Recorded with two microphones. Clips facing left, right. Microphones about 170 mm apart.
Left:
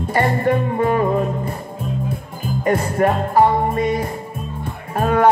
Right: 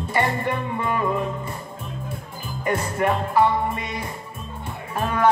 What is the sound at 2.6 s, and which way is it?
Music, 45° left (ahead or behind).